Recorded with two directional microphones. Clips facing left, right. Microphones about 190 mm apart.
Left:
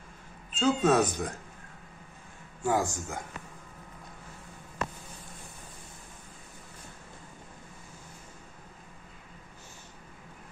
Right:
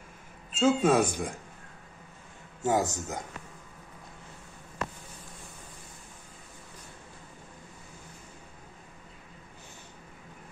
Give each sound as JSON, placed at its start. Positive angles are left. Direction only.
{"t": 0.6, "sound": "speech", "side_deg": -5}
{"t": 2.6, "sound": "speech", "side_deg": -20}